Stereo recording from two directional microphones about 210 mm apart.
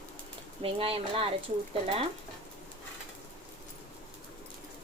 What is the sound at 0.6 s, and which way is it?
Speech, 25° right (ahead or behind).